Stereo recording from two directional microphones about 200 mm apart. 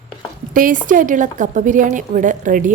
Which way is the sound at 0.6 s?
40° right (ahead or behind).